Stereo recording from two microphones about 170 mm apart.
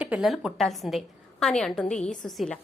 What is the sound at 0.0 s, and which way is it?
A woman's voice, 5° right (ahead or behind).